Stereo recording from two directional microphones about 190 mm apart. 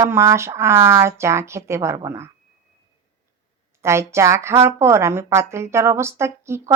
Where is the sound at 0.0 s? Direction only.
15° right (ahead or behind).